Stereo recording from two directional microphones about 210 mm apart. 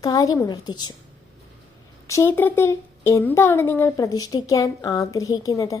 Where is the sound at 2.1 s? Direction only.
10° left (ahead or behind).